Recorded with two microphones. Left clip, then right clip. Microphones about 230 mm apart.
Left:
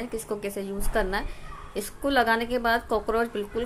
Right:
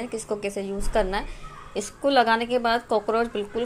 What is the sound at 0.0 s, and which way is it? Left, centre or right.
Speech, centre.